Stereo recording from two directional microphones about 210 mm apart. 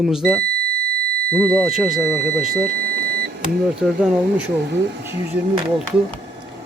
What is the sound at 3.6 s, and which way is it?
Speech, 5° right (ahead or behind).